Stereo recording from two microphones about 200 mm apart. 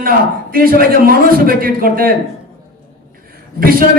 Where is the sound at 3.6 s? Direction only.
45° right (ahead or behind).